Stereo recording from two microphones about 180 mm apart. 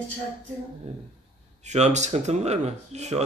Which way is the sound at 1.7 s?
40° right (ahead or behind).